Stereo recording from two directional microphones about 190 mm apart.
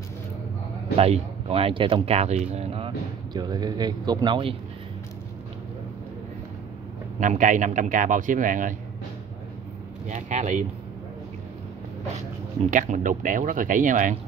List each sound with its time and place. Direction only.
0.9 s speech: 30° right (ahead or behind)
3.3 s speech: 20° right (ahead or behind)
7.2 s a man's voice: 40° right (ahead or behind)
10.0 s speech: 40° right (ahead or behind)
12.7 s a man's voice: 40° right (ahead or behind)